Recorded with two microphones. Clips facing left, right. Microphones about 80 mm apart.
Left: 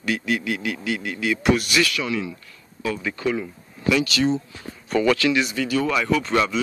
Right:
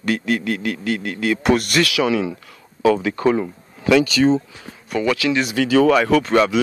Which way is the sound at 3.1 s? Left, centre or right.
Right.